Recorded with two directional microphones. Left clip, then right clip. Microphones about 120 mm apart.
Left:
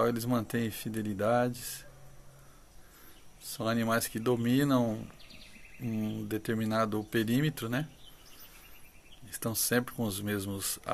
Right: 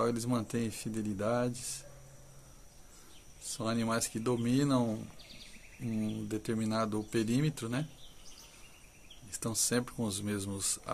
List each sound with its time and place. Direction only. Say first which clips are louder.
0.0 s speech: left 3 dB; 15° left (ahead or behind)
3.5 s speech: left 4 dB; 15° left (ahead or behind)
9.3 s speech: left 2 dB; 15° left (ahead or behind)